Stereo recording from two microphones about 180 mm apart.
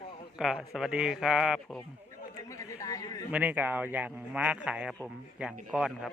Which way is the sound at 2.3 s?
15° left (ahead or behind).